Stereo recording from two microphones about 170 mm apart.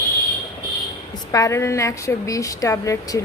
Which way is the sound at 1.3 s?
20° left (ahead or behind).